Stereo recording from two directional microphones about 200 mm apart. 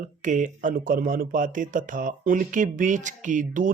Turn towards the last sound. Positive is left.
turn(degrees=-40)  # may be behind; listen again after turning